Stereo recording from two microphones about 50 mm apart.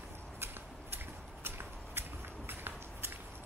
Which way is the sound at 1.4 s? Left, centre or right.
Right.